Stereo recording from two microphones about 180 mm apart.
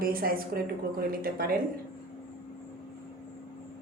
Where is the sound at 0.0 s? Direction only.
55° right (ahead or behind).